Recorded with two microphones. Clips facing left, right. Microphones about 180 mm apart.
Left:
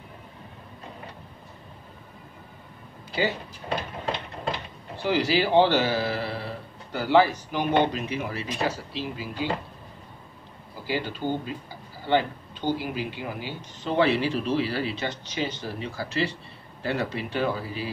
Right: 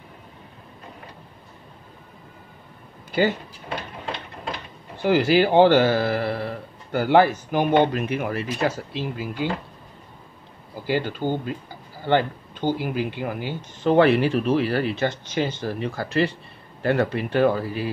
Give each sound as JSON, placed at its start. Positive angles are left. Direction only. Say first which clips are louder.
{"t": 3.1, "sound": "a sound", "louder": "right 5 dB", "side_deg": -50}
{"t": 4.9, "sound": "a man's voice", "louder": "right 6 dB", "side_deg": -50}
{"t": 10.9, "sound": "speech", "louder": "right 4 dB", "side_deg": -50}